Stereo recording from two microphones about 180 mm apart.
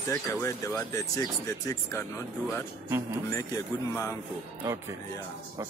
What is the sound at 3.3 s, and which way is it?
Speech, 15° left (ahead or behind).